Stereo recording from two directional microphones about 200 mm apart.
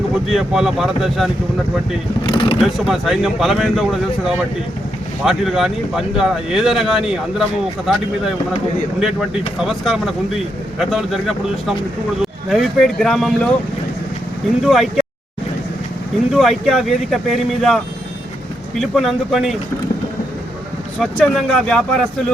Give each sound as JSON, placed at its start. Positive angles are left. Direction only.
{"t": 0.3, "sound": "speech", "side_deg": 0}
{"t": 2.2, "sound": "speech", "side_deg": 25}
{"t": 2.6, "sound": "speech", "side_deg": 0}
{"t": 5.2, "sound": "speech", "side_deg": 0}
{"t": 14.6, "sound": "speech", "side_deg": 0}
{"t": 16.3, "sound": "speech", "side_deg": 0}
{"t": 18.8, "sound": "speech", "side_deg": 0}
{"t": 21.0, "sound": "speech", "side_deg": 0}